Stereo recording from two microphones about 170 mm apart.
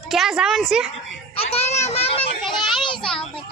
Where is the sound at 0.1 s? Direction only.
Centre (ahead or behind).